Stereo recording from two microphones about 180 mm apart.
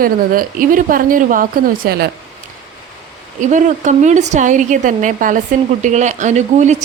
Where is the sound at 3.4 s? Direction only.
45° right (ahead or behind).